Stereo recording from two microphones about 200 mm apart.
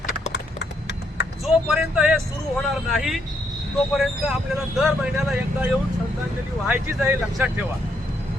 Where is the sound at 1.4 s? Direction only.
5° right (ahead or behind).